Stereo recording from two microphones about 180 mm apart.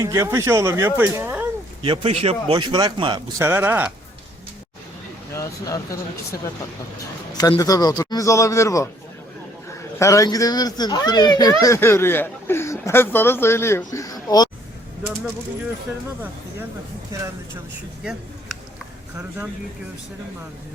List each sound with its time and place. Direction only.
0.0 s speech: 15° right (ahead or behind)
1.8 s speech: 30° right (ahead or behind)
3.4 s speech: 10° right (ahead or behind)
5.3 s speech: 15° left (ahead or behind)
7.3 s speech: 20° left (ahead or behind)
10.0 s speech: 20° left (ahead or behind)
18.0 s speech: 5° right (ahead or behind)